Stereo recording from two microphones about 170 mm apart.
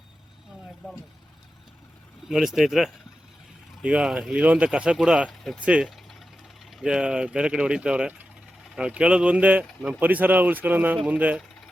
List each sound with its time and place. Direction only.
2.2 s speech: centre (ahead or behind)